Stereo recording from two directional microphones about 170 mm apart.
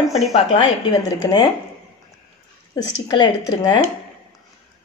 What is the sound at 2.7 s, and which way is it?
Speech, 25° left (ahead or behind).